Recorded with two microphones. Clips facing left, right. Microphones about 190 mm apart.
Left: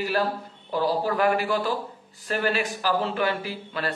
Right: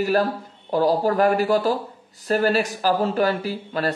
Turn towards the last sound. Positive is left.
turn(degrees=-40)  # may be behind; listen again after turning